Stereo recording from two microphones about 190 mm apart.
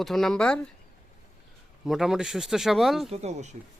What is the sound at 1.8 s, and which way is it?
Speech, centre (ahead or behind).